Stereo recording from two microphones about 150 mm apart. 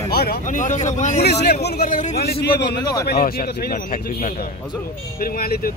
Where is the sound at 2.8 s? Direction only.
25° left (ahead or behind).